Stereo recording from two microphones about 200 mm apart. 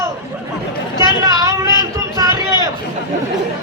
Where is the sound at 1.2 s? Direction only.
15° right (ahead or behind).